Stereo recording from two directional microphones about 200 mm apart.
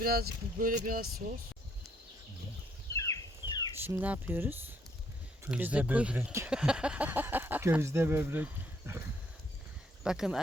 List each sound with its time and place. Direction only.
0.0 s speech: 50° right (ahead or behind)
2.9 s a sound: 15° left (ahead or behind)
3.8 s speech: 10° right (ahead or behind)
10.0 s speech: 5° right (ahead or behind)